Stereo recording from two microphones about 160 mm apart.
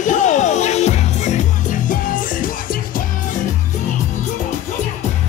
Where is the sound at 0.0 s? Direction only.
50° left (ahead or behind).